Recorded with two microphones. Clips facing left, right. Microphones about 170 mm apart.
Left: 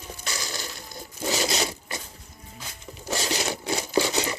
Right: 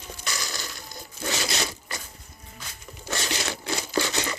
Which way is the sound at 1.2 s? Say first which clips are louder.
Left 3 dB; 15° left (ahead or behind).